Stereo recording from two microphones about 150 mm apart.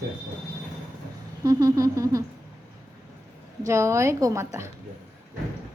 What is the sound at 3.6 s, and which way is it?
A woman's voice, 20° right (ahead or behind).